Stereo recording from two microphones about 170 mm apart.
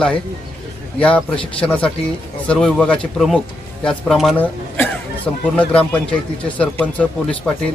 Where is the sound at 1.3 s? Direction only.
30° left (ahead or behind).